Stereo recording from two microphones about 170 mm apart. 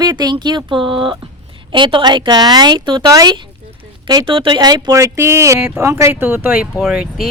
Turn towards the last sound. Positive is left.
turn(degrees=-5)  # may be behind; listen again after turning